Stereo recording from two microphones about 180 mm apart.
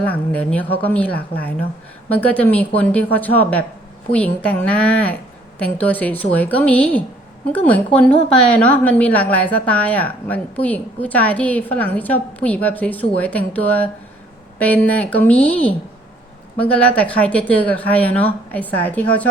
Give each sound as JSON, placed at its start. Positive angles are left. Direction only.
{"t": 0.0, "sound": "a woman's voice", "side_deg": 10}